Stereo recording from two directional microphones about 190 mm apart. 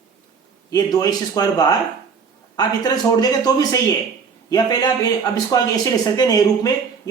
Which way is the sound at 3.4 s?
20° left (ahead or behind).